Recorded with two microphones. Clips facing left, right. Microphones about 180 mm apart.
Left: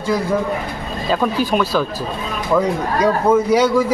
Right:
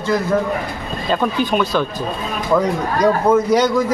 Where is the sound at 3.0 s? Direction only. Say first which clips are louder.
Right 1 dB; 10° left (ahead or behind).